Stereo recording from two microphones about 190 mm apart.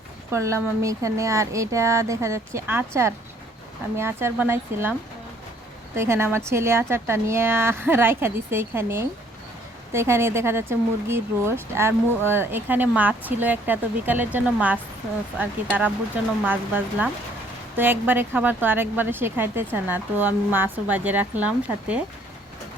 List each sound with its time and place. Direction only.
0.3 s speech: 15° right (ahead or behind)
6.0 s speech: 15° right (ahead or behind)